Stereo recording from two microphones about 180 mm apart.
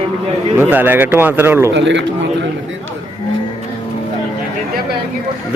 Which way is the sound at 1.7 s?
85° right.